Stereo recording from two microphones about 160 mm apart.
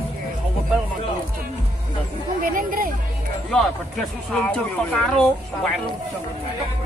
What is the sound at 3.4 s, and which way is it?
Speech, centre (ahead or behind).